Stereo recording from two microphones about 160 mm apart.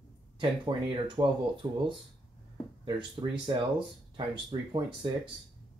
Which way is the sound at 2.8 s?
30° right (ahead or behind).